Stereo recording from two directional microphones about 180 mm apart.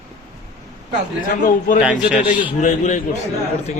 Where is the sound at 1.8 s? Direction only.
5° right (ahead or behind).